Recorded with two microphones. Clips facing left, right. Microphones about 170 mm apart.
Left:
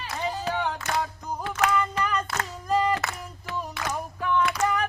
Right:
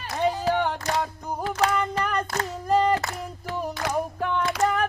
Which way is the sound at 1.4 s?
35° right (ahead or behind).